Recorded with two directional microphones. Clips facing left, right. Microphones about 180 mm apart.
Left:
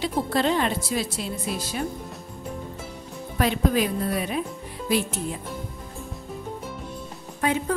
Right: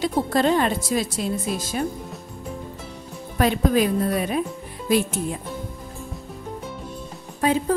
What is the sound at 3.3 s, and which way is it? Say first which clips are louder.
A woman's voice: right 3 dB; 45° right (ahead or behind).